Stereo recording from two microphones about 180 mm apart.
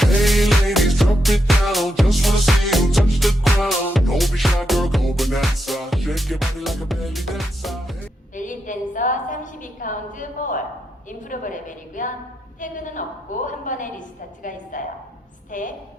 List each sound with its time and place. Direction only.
0.0 s music: centre (ahead or behind)
8.4 s a sound: 45° left (ahead or behind)
12.5 s a woman's voice: 45° left (ahead or behind)